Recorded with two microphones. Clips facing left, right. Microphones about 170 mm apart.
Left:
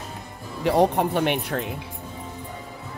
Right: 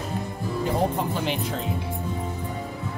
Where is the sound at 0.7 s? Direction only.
70° left (ahead or behind).